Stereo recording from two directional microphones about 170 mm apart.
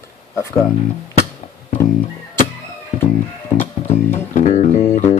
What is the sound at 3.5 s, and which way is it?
Music, 45° left (ahead or behind).